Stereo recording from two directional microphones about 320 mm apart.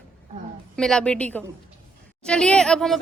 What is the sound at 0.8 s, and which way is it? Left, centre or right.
A woman's voice, centre.